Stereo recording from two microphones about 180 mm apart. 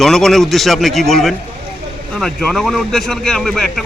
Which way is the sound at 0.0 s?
Centre (ahead or behind).